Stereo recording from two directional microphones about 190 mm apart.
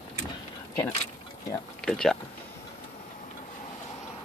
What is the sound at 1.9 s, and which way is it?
Speech, 5° left (ahead or behind).